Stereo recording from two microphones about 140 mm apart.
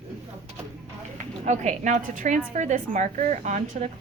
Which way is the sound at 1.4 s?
60° right (ahead or behind).